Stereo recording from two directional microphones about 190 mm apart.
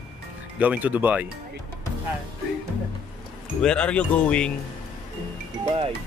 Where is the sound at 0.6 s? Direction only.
10° right (ahead or behind).